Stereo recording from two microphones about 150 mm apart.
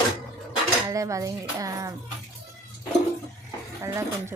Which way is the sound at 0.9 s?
20° right (ahead or behind).